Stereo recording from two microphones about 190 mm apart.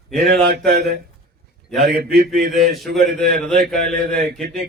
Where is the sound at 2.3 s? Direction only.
Centre (ahead or behind).